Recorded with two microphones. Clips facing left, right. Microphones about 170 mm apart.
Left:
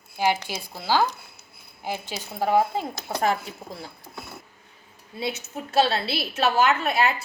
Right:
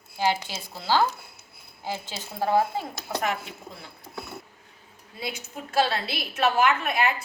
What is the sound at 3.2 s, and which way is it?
Speech, 35° left (ahead or behind).